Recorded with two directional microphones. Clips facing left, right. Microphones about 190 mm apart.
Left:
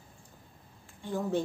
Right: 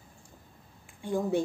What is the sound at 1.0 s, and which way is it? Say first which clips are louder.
Speech: right 3 dB; 15° right (ahead or behind).